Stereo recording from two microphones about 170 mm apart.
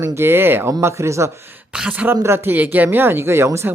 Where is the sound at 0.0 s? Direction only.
15° right (ahead or behind).